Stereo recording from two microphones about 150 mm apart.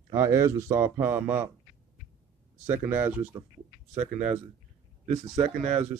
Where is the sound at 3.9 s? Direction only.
50° right (ahead or behind).